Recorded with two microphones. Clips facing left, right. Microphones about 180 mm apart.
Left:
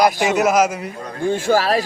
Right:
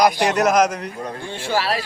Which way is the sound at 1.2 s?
45° left (ahead or behind).